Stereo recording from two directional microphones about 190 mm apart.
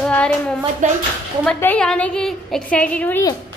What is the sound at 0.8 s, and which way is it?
Speech, 40° right (ahead or behind).